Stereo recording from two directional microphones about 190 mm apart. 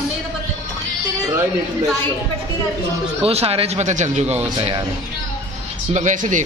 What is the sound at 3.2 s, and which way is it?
Speech, 30° right (ahead or behind).